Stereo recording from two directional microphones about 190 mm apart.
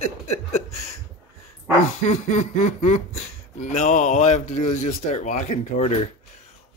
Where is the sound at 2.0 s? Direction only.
40° left (ahead or behind).